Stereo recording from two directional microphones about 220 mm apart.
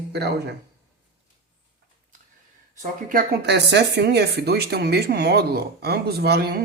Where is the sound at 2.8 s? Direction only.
40° right (ahead or behind).